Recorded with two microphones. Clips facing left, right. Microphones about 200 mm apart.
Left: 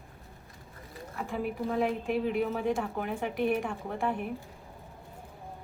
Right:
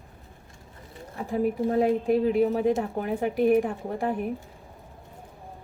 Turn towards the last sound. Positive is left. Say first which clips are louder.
# right 4 dB
turn(degrees=-40)  # may be behind; listen again after turning